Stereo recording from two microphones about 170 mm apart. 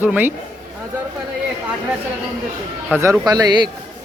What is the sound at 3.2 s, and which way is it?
Speech, 25° right (ahead or behind).